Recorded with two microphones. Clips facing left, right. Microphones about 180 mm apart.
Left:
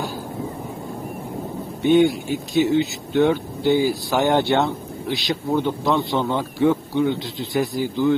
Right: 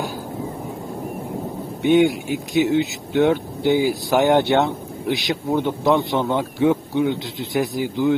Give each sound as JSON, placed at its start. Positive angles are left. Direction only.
{"t": 1.8, "sound": "speech", "side_deg": -15}